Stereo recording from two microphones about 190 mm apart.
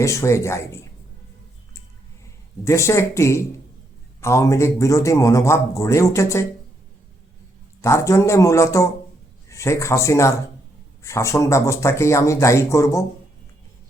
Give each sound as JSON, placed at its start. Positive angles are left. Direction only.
{"t": 0.0, "sound": "a man's voice", "side_deg": 15}
{"t": 2.6, "sound": "a man's voice", "side_deg": 15}
{"t": 7.8, "sound": "a man's voice", "side_deg": 15}